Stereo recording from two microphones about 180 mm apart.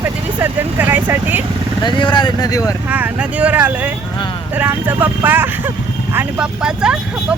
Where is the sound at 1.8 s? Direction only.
25° left (ahead or behind).